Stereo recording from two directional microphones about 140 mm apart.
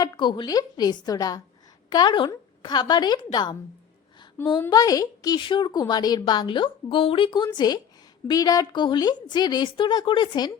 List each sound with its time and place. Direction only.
0.0 s a woman's voice: 35° left (ahead or behind)
4.4 s a woman's voice: 20° left (ahead or behind)